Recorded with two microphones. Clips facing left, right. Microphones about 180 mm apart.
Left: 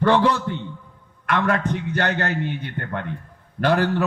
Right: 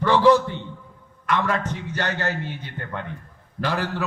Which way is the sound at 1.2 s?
55° left (ahead or behind).